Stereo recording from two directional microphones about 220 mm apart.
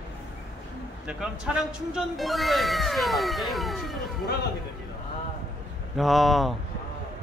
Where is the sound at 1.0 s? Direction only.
5° right (ahead or behind).